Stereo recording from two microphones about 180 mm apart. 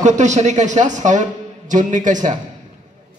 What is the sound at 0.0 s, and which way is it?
A man's voice, 40° right (ahead or behind).